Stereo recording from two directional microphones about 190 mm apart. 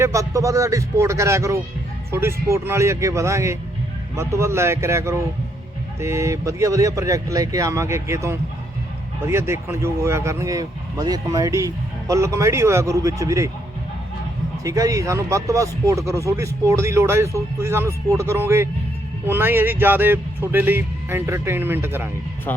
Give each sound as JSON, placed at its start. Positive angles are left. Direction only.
{"t": 0.0, "sound": "speech", "side_deg": -15}
{"t": 14.6, "sound": "speech", "side_deg": -15}
{"t": 22.5, "sound": "speech", "side_deg": 10}